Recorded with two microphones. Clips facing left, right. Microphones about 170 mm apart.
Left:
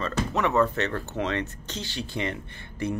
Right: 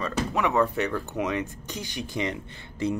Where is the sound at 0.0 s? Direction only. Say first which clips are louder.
Even; 10° right (ahead or behind).